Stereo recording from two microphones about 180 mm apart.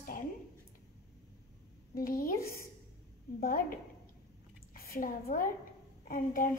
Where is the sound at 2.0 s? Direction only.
50° left (ahead or behind).